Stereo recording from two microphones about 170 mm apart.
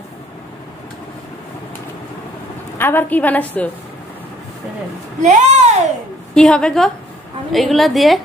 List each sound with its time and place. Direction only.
2.8 s a woman's voice: 10° left (ahead or behind)
5.2 s a child's voice: 45° right (ahead or behind)
6.3 s a woman's voice: 5° left (ahead or behind)